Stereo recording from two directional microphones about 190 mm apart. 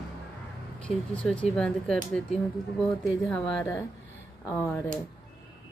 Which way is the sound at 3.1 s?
Centre (ahead or behind).